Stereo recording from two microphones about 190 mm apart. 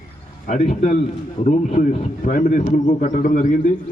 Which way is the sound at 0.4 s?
40° left (ahead or behind).